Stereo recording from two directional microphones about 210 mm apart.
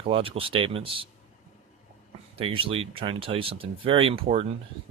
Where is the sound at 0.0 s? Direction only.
25° right (ahead or behind).